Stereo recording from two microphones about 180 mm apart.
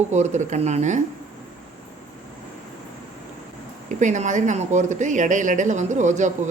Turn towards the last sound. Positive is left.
turn(degrees=-40)  # may be behind; listen again after turning